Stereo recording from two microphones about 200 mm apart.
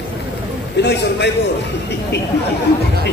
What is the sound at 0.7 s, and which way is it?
Speech, 55° left (ahead or behind).